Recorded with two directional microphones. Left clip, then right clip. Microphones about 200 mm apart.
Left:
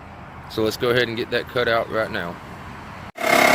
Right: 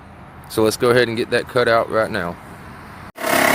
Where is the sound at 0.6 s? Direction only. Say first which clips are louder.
Right 5 dB; 40° right (ahead or behind).